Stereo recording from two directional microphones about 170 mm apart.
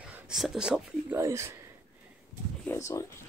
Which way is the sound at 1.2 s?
15° right (ahead or behind).